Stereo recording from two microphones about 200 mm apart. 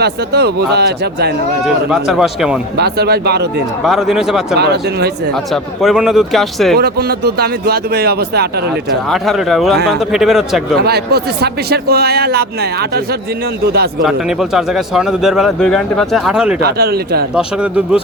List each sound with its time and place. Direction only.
0.0 s a man's voice: 55° right (ahead or behind)
1.6 s speech: 5° right (ahead or behind)
2.7 s speech: 55° right (ahead or behind)
3.8 s speech: centre (ahead or behind)
4.5 s speech: 55° right (ahead or behind)
5.3 s speech: centre (ahead or behind)
6.7 s a man's voice: 50° right (ahead or behind)
8.7 s speech: centre (ahead or behind)
10.8 s a man's voice: 55° right (ahead or behind)
14.0 s speech: centre (ahead or behind)
16.6 s a man's voice: 50° right (ahead or behind)
17.3 s speech: 5° right (ahead or behind)